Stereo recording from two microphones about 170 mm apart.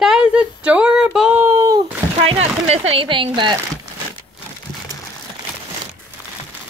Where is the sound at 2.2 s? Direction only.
40° right (ahead or behind).